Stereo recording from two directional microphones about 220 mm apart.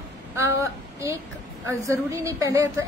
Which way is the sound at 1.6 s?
15° right (ahead or behind).